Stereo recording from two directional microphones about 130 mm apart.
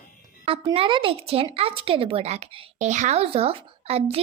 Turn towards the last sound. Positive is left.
turn(degrees=-50)  # may be behind; listen again after turning